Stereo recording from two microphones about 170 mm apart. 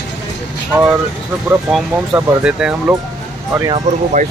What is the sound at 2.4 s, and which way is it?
Speech, 5° right (ahead or behind).